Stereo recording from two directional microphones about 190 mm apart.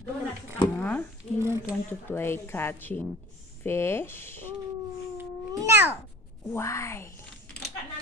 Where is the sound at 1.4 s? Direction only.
15° right (ahead or behind).